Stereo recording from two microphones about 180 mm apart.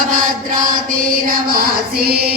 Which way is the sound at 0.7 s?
50° right (ahead or behind).